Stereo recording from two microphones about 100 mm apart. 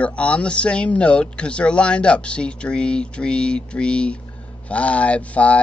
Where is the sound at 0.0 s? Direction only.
10° left (ahead or behind).